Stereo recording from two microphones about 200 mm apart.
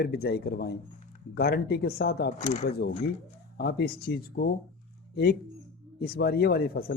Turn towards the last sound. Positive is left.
turn(degrees=50)  # may be behind; listen again after turning